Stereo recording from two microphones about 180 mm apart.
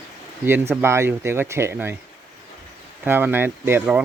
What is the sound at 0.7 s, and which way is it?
Speech, 15° right (ahead or behind).